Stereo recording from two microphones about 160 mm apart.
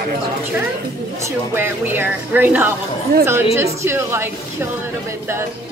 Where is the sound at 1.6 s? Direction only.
10° right (ahead or behind).